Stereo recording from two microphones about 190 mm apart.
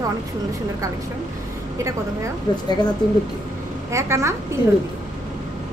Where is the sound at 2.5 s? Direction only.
20° left (ahead or behind).